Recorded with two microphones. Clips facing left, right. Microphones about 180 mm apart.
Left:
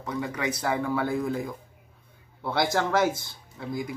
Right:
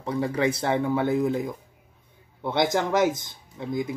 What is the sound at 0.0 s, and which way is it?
Speech, 30° right (ahead or behind).